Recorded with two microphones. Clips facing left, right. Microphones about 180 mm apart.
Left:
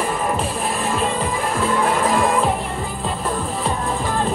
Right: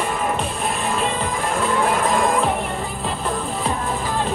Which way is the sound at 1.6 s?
Centre (ahead or behind).